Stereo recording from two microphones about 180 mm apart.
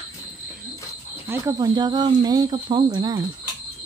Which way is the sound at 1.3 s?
20° right (ahead or behind).